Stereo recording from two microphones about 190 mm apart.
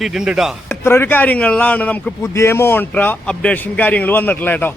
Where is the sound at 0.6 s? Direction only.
10° left (ahead or behind).